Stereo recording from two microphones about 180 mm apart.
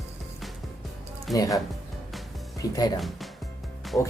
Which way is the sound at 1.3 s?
20° left (ahead or behind).